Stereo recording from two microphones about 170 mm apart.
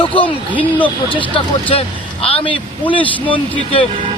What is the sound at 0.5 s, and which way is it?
Speech, 10° left (ahead or behind).